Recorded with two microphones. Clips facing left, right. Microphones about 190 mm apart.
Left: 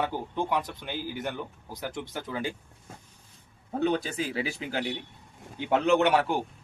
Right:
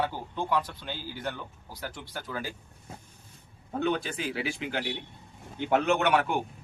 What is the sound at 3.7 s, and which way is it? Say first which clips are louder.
Speech: left 2 dB; 35° left (ahead or behind).